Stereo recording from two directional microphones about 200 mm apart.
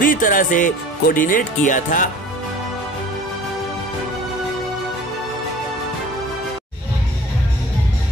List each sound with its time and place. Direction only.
0.0 s speech: 40° left (ahead or behind)